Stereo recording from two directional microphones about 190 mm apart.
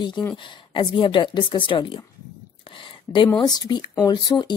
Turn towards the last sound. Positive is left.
turn(degrees=25)  # may be behind; listen again after turning